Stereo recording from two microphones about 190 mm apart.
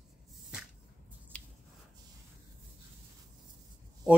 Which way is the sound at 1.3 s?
5° left (ahead or behind).